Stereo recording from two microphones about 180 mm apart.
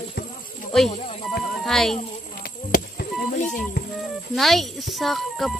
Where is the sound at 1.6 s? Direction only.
Centre (ahead or behind).